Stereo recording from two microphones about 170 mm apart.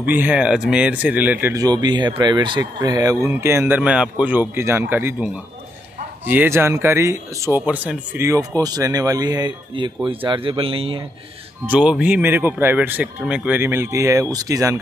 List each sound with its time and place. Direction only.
0.0 s a man's voice: 10° right (ahead or behind); by 11.1 s 30° right (ahead or behind)
11.6 s speech: 5° right (ahead or behind)